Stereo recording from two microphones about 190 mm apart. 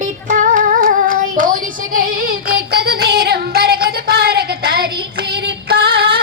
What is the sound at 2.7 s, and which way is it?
Child singing, 55° right (ahead or behind).